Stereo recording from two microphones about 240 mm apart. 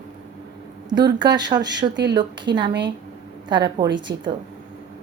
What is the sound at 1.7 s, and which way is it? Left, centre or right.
Speech, right.